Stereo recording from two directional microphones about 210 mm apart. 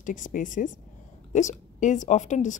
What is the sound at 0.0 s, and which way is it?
Speech, 40° left (ahead or behind).